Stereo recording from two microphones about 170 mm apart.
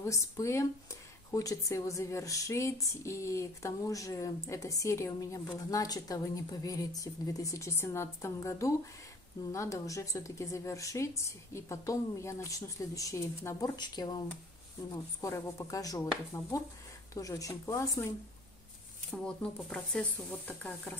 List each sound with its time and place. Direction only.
0.0 s speech: 20° left (ahead or behind)
19.2 s speech: 5° left (ahead or behind)